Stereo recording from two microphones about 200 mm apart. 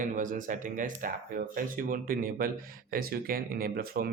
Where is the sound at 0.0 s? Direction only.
40° right (ahead or behind).